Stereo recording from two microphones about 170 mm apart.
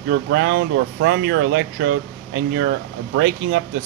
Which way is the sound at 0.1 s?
90° right.